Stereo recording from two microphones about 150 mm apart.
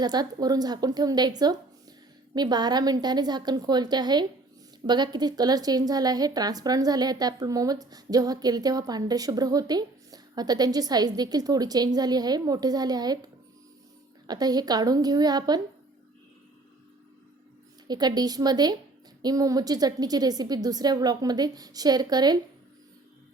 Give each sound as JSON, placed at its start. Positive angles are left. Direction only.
{"t": 0.0, "sound": "a woman's voice", "side_deg": -25}
{"t": 14.3, "sound": "a woman's voice", "side_deg": -25}
{"t": 17.8, "sound": "a woman's voice", "side_deg": -25}